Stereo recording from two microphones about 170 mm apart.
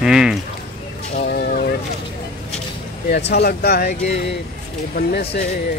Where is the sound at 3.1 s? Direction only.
80° left.